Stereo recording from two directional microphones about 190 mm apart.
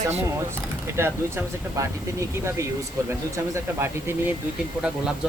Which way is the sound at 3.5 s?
15° right (ahead or behind).